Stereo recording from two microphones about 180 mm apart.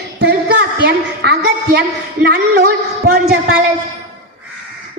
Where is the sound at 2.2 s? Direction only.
60° right (ahead or behind).